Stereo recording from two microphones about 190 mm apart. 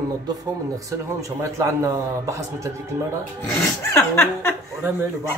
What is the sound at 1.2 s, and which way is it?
A man's voice, 15° right (ahead or behind).